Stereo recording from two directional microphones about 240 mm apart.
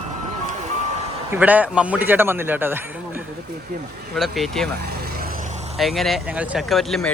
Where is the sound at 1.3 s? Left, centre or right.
Centre.